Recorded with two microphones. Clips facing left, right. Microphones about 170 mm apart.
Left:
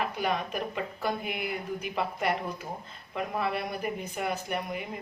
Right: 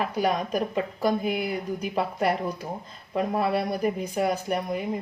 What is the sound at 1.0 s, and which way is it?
Speech, 40° right (ahead or behind).